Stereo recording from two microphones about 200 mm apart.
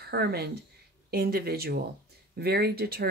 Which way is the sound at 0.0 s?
50° right (ahead or behind).